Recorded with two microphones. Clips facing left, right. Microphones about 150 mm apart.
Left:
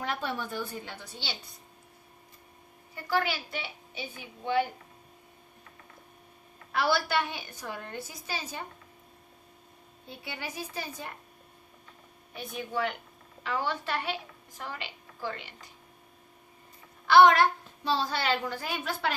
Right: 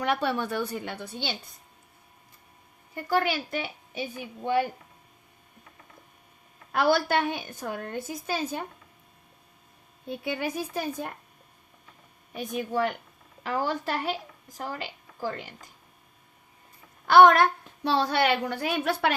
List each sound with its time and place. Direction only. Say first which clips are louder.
0.0 s a woman's voice: right 7 dB; 70° right (ahead or behind); by 1.4 s 55° right (ahead or behind)
2.9 s a woman's voice: right 4 dB; 50° right (ahead or behind)
6.7 s a woman's voice: right 4 dB; 50° right (ahead or behind)
10.1 s a woman's voice: right 10 dB; 55° right (ahead or behind)
12.3 s a woman's voice: right 5 dB; 45° right (ahead or behind)
17.1 s a woman's voice: right 3 dB; 50° right (ahead or behind); by 19.1 s 65° right (ahead or behind)